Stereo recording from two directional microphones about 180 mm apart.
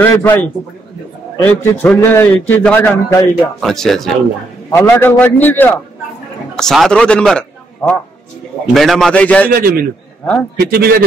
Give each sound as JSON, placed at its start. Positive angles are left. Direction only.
{"t": 0.0, "sound": "a man's voice", "side_deg": 10}
{"t": 3.6, "sound": "a man's voice", "side_deg": 0}
{"t": 9.5, "sound": "a man's voice", "side_deg": -55}